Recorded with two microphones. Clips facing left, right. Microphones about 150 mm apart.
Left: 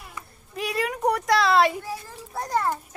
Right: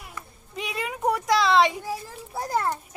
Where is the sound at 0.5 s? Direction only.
Centre (ahead or behind).